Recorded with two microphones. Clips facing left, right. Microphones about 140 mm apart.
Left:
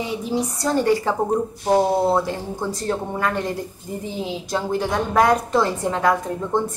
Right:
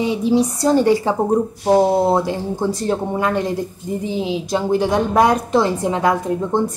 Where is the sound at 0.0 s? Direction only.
20° right (ahead or behind).